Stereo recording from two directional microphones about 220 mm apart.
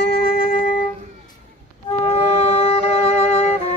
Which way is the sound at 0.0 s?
45° left (ahead or behind).